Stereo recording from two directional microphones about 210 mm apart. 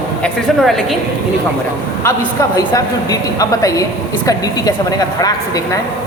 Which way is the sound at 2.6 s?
15° left (ahead or behind).